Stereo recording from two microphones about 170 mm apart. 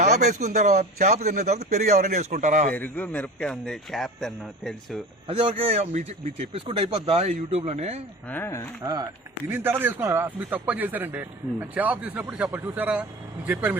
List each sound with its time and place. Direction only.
0.0 s a man's voice: 45° right (ahead or behind)
2.7 s a man's voice: 10° left (ahead or behind)
5.3 s a man's voice: 30° right (ahead or behind)
8.3 s speech: 15° left (ahead or behind)
8.8 s speech: 20° right (ahead or behind)
9.5 s a man's voice: 10° right (ahead or behind)